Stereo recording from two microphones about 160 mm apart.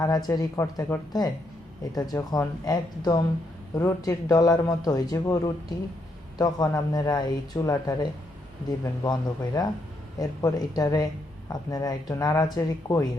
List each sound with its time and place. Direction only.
0.0 s speech: 20° left (ahead or behind)